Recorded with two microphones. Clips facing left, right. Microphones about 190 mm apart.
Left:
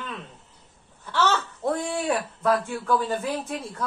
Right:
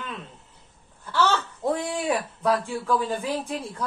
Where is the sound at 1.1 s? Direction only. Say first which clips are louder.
Even; 5° right (ahead or behind).